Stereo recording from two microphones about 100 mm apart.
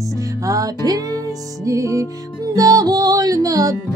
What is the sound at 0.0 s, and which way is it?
Music, 35° right (ahead or behind).